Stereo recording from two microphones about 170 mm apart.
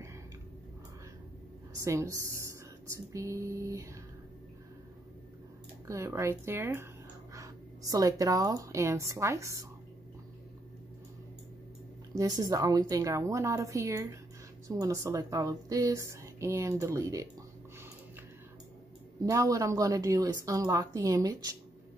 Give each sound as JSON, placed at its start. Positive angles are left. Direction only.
{"t": 1.9, "sound": "speech", "side_deg": -15}
{"t": 5.9, "sound": "speech", "side_deg": -15}
{"t": 12.2, "sound": "speech", "side_deg": -25}
{"t": 19.2, "sound": "speech", "side_deg": -20}